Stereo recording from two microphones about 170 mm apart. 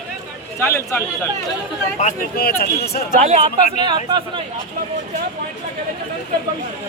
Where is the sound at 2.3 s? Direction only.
65° left (ahead or behind).